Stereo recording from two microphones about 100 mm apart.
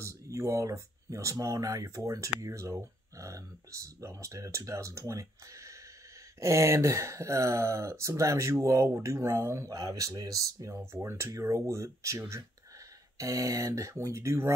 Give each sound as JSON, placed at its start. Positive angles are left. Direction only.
{"t": 0.0, "sound": "speech", "side_deg": -30}